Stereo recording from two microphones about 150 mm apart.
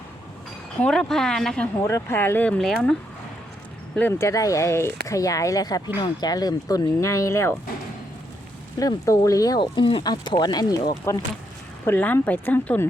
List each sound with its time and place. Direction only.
0.8 s speech: 5° left (ahead or behind)
1.8 s speech: 20° left (ahead or behind); by 2.9 s centre (ahead or behind)
4.1 s speech: 20° left (ahead or behind)
8.8 s speech: 25° left (ahead or behind)